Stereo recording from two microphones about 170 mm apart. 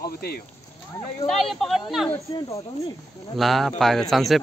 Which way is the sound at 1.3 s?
Centre (ahead or behind).